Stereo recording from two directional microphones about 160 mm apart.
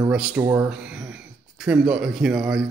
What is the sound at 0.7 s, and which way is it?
A man's voice, 5° right (ahead or behind).